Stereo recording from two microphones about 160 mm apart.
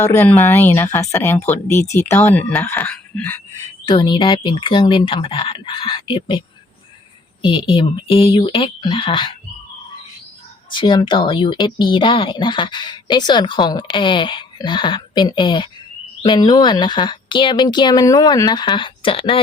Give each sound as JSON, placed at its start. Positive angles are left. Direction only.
{"t": 0.0, "sound": "speech", "side_deg": 15}
{"t": 3.8, "sound": "speech", "side_deg": 30}
{"t": 7.4, "sound": "speech", "side_deg": 30}
{"t": 10.7, "sound": "speech", "side_deg": 30}